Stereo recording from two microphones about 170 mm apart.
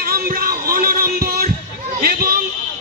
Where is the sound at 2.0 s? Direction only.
60° right (ahead or behind).